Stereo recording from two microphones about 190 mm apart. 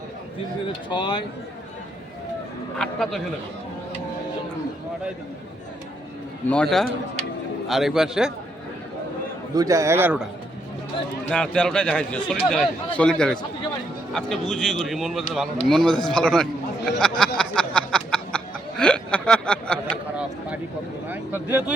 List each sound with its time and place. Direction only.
0.9 s speech: 25° left (ahead or behind)
2.7 s a man's voice: centre (ahead or behind)
6.5 s a man's voice: 5° left (ahead or behind)
9.6 s a man's voice: 15° right (ahead or behind)
11.3 s a man's voice: 5° left (ahead or behind)
17.2 s chuckle: 5° left (ahead or behind)